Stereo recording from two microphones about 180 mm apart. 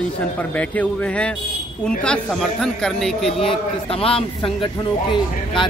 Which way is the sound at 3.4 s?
30° left (ahead or behind).